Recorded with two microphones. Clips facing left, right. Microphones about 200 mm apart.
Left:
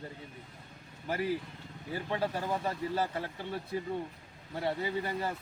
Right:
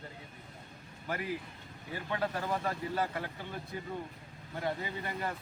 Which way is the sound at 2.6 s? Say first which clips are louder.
Left 1 dB; 25° left (ahead or behind).